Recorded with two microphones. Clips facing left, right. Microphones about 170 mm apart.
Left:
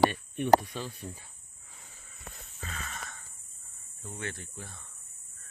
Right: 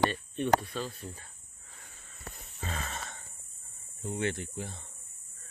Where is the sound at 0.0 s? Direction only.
15° left (ahead or behind).